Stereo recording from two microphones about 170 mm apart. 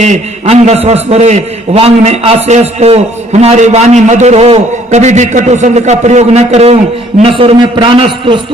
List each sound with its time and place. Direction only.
0.0 s a man's voice: 40° right (ahead or behind)